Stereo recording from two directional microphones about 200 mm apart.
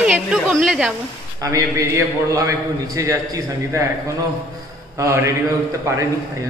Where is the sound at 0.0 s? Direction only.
5° right (ahead or behind).